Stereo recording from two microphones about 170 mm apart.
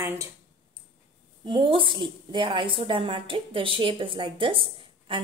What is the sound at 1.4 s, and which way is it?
A woman's voice, 30° right (ahead or behind).